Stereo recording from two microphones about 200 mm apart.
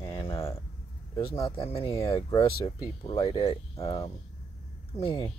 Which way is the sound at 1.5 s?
30° left (ahead or behind).